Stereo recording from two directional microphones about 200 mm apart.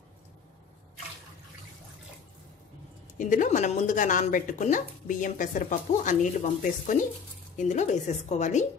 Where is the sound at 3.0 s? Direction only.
40° left (ahead or behind).